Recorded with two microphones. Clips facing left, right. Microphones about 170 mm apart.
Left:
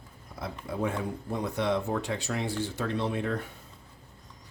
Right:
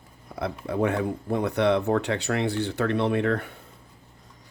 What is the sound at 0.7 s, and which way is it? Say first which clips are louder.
Speech: right 6 dB; 70° right (ahead or behind).